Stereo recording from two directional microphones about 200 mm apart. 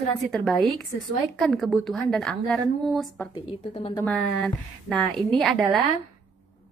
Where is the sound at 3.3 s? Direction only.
30° left (ahead or behind).